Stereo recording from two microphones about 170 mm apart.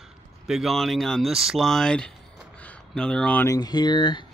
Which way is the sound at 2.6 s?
5° left (ahead or behind).